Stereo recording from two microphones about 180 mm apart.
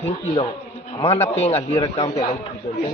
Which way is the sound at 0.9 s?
15° left (ahead or behind).